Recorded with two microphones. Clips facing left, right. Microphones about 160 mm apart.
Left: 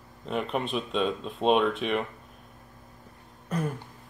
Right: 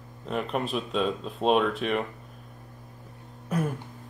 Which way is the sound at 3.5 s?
10° right (ahead or behind).